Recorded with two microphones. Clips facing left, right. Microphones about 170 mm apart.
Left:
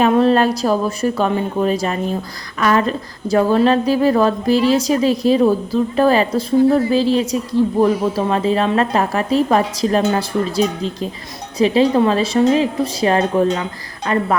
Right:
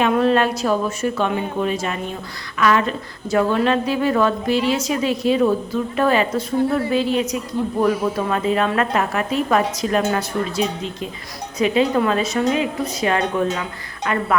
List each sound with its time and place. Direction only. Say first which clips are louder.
0.0 s a woman's voice: left 3 dB; 35° left (ahead or behind)